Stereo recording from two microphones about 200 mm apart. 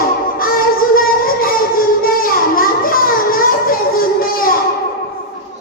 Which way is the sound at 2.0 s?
45° left (ahead or behind).